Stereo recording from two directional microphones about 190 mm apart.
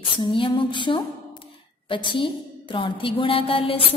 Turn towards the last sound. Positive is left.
turn(degrees=30)  # may be behind; listen again after turning